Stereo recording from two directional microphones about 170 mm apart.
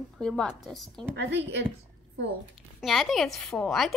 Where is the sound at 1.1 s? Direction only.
90° right.